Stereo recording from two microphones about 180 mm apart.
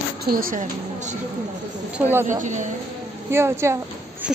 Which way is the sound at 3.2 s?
15° right (ahead or behind).